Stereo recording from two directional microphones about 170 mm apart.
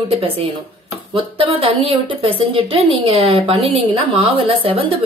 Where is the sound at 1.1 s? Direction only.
30° right (ahead or behind).